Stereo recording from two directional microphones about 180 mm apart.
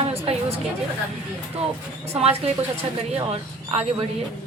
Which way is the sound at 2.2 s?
35° right (ahead or behind).